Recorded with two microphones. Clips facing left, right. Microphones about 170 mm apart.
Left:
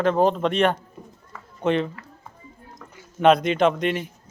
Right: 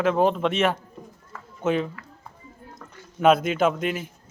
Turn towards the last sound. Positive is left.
turn(degrees=0)  # may be behind; listen again after turning